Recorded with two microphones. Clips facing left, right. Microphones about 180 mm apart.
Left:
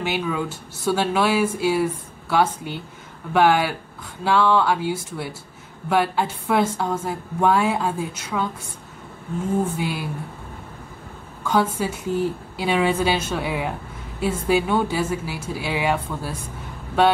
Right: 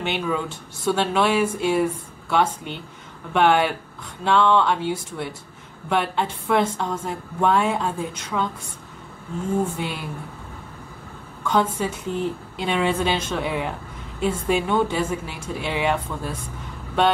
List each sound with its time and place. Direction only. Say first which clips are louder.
0.0 s a woman's voice: left 1 dB; 5° left (ahead or behind)
9.8 s a woman's voice: left 3 dB; 5° left (ahead or behind)
11.4 s a woman's voice: left 1 dB; 5° left (ahead or behind)